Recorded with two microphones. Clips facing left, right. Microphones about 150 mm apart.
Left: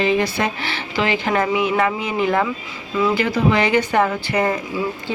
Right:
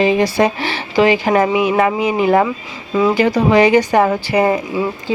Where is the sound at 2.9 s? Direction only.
40° right (ahead or behind).